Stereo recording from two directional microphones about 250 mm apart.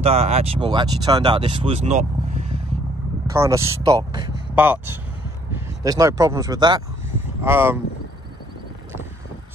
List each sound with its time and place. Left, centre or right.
0.0 s speech: right
3.3 s speech: centre